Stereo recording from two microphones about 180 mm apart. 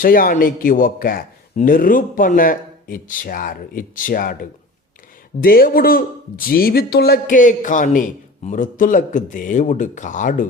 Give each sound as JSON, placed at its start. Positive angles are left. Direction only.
{"t": 0.0, "sound": "a man's voice", "side_deg": 50}
{"t": 5.4, "sound": "a man's voice", "side_deg": 55}